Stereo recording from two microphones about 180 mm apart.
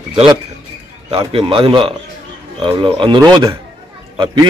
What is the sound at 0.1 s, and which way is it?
A man's voice, 30° right (ahead or behind).